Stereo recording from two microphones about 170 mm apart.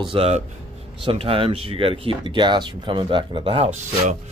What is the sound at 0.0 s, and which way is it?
Speech, 30° right (ahead or behind).